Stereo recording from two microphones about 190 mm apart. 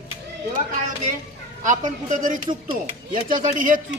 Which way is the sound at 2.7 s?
25° right (ahead or behind).